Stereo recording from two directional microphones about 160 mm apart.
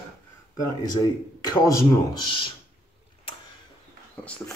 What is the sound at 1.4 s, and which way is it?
Speech, 20° left (ahead or behind).